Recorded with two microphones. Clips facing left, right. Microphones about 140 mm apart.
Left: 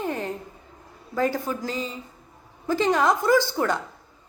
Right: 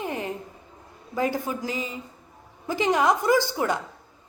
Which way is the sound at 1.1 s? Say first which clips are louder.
Left 1 dB; 15° right (ahead or behind).